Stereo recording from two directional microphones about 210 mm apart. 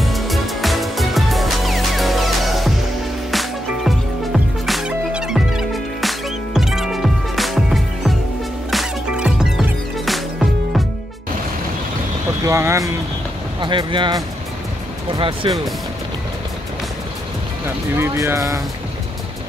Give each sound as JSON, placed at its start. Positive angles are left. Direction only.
{"t": 0.0, "sound": "music", "side_deg": 0}
{"t": 12.4, "sound": "vehicle", "side_deg": -15}
{"t": 13.6, "sound": "speech", "side_deg": -25}
{"t": 17.9, "sound": "speech", "side_deg": -10}